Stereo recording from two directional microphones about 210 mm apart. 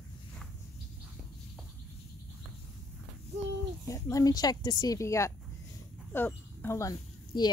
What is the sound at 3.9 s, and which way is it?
Speech, 15° left (ahead or behind).